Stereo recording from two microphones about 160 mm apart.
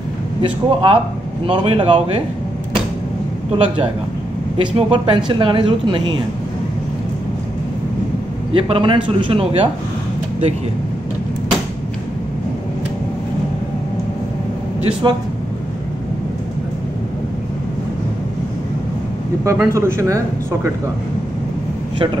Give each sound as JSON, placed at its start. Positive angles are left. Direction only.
{"t": 0.4, "sound": "speech", "side_deg": -35}
{"t": 3.5, "sound": "speech", "side_deg": -30}
{"t": 8.5, "sound": "speech", "side_deg": -35}
{"t": 15.0, "sound": "speech", "side_deg": -25}
{"t": 19.4, "sound": "speech", "side_deg": -15}
{"t": 21.9, "sound": "speech", "side_deg": -30}